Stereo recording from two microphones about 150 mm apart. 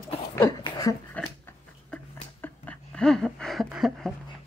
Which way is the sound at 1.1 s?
10° left (ahead or behind).